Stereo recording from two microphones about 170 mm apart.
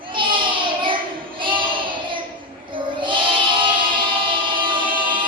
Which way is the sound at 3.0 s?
30° right (ahead or behind).